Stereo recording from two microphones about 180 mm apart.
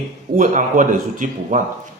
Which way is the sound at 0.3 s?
45° right (ahead or behind).